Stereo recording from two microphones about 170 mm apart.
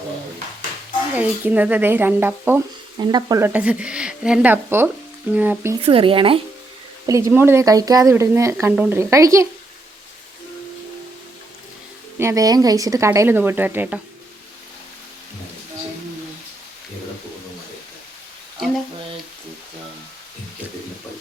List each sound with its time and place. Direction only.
1.1 s speech: 10° right (ahead or behind)
3.0 s speech: 25° right (ahead or behind)
5.8 s speech: 30° right (ahead or behind)
7.1 s speech: 20° right (ahead or behind)
12.2 s speech: 20° right (ahead or behind)